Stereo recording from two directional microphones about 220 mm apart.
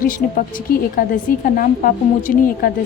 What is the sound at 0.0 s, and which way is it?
A woman's voice, 40° left (ahead or behind).